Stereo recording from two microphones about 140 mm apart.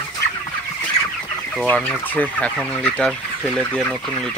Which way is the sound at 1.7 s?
10° left (ahead or behind).